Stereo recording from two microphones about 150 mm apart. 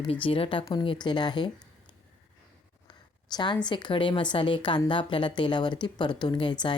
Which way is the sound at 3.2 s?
30° left (ahead or behind).